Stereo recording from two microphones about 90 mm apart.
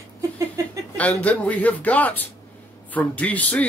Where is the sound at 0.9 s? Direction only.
15° left (ahead or behind).